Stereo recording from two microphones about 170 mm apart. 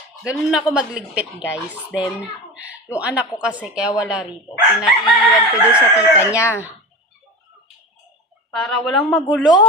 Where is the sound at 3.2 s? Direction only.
5° right (ahead or behind).